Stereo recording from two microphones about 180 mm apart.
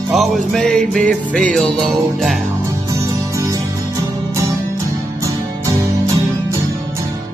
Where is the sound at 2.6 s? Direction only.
15° right (ahead or behind).